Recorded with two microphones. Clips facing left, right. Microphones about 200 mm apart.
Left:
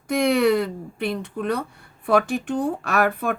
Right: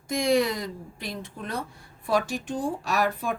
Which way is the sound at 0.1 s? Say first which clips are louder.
Left 5 dB; 65° left (ahead or behind).